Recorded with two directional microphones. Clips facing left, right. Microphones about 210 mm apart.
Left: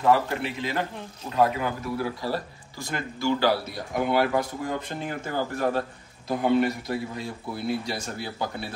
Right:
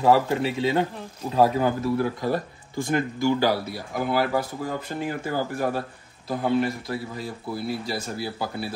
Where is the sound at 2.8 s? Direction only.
15° right (ahead or behind).